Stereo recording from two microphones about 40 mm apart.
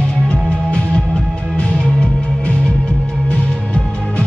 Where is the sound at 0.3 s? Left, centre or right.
Left.